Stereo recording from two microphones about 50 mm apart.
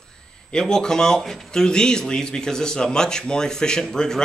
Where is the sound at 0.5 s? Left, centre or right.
Centre.